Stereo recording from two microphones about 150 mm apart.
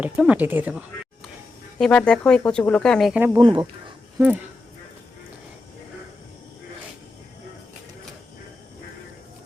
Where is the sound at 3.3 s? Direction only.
30° right (ahead or behind).